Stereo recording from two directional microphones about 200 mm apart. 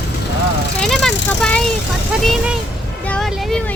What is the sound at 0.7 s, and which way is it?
Speech, 5° left (ahead or behind).